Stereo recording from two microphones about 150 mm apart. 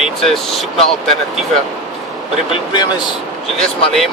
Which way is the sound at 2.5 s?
30° left (ahead or behind).